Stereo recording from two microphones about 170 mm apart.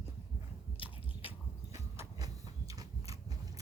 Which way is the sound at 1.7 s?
15° right (ahead or behind).